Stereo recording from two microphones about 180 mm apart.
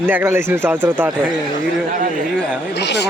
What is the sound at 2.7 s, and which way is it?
Speech, 70° left (ahead or behind).